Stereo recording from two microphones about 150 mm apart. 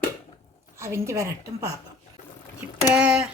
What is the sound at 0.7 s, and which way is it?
A woman's voice, 20° right (ahead or behind).